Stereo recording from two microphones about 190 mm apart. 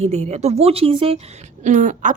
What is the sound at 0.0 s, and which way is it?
Speech, 35° right (ahead or behind).